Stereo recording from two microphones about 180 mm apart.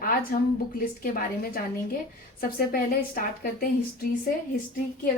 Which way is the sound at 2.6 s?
55° left (ahead or behind).